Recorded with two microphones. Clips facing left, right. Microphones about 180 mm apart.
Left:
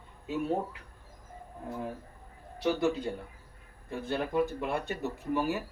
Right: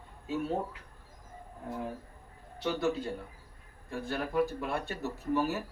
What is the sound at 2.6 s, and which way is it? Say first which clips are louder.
Speech: left 3 dB; 15° left (ahead or behind).